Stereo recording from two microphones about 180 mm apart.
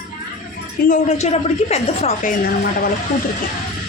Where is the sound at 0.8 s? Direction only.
45° left (ahead or behind).